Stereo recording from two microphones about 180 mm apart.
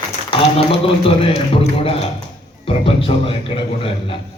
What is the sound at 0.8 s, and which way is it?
A man's voice, 30° left (ahead or behind).